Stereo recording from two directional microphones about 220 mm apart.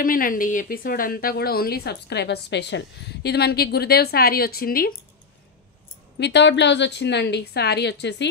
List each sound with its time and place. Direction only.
0.0 s a woman's voice: 40° left (ahead or behind)
6.1 s a woman's voice: 50° left (ahead or behind)